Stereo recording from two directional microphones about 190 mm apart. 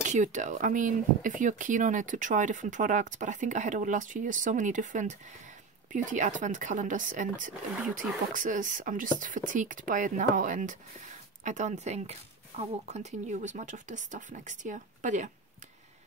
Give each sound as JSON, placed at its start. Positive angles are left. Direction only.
{"t": 0.0, "sound": "speech", "side_deg": -40}